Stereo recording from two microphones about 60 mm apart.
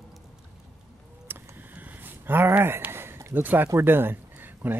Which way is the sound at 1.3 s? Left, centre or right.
Right.